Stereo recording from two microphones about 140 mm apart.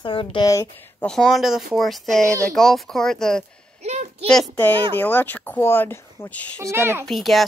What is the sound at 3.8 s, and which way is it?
Speech, 50° right (ahead or behind).